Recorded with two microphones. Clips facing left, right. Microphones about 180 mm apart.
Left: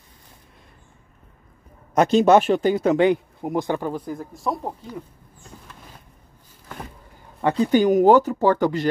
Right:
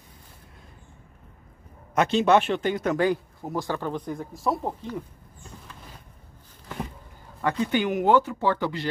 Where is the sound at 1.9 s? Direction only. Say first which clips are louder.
Left 5 dB; 40° left (ahead or behind).